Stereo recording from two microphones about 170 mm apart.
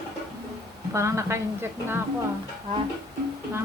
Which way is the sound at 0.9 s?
15° right (ahead or behind).